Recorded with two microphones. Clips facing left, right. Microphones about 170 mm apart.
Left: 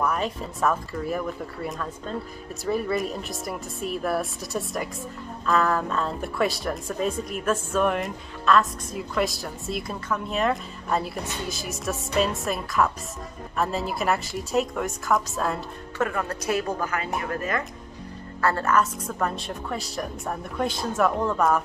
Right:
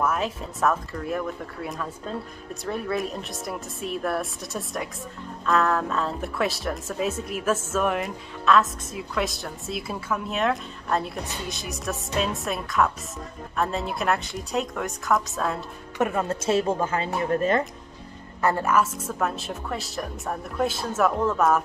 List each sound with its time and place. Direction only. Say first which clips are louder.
0.0 s a woman's voice: even; centre (ahead or behind)
16.0 s speech: right 2 dB; 20° right (ahead or behind)
18.4 s a woman's voice: even; 15° right (ahead or behind)